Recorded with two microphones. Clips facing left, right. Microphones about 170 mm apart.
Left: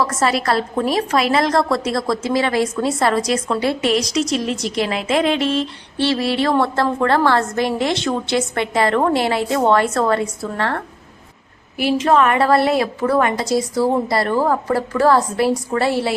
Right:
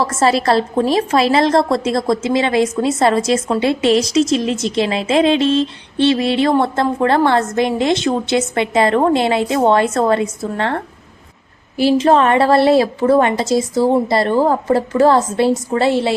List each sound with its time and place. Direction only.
0.0 s a woman's voice: 30° right (ahead or behind)
11.8 s a woman's voice: 30° right (ahead or behind)